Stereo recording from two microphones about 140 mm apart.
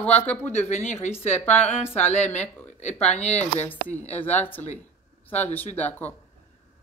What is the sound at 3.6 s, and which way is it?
Speech, 10° left (ahead or behind).